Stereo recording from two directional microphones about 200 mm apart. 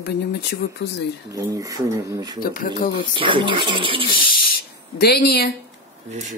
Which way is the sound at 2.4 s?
45° left (ahead or behind).